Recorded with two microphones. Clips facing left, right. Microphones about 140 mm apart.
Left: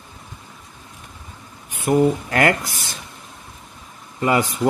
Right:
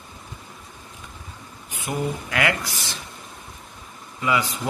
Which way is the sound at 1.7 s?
50° left (ahead or behind).